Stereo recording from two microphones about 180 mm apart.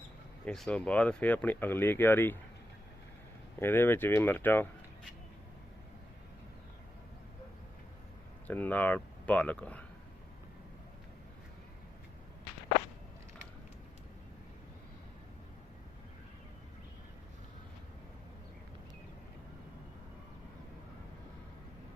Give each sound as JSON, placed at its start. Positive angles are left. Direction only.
{"t": 0.4, "sound": "speech", "side_deg": 5}
{"t": 3.6, "sound": "speech", "side_deg": 10}
{"t": 8.4, "sound": "speech", "side_deg": 10}